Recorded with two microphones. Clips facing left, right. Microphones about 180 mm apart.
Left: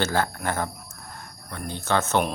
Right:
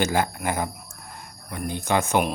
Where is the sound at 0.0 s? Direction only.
15° right (ahead or behind).